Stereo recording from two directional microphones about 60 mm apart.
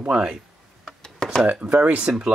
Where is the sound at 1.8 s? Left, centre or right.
Right.